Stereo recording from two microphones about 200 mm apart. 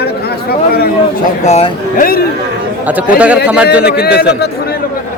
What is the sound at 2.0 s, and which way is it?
Speech, 50° left (ahead or behind).